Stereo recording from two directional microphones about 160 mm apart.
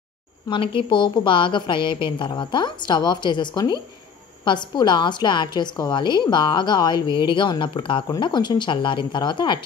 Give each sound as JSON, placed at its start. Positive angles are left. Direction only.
{"t": 0.5, "sound": "a woman's voice", "side_deg": 30}